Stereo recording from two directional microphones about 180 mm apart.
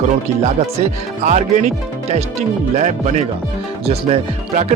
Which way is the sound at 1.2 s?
40° right (ahead or behind).